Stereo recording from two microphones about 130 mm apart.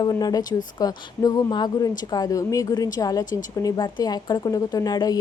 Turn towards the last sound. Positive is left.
turn(degrees=30)  # may be behind; listen again after turning